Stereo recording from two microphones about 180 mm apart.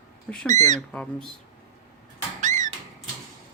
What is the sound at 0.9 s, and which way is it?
Speech, 5° left (ahead or behind).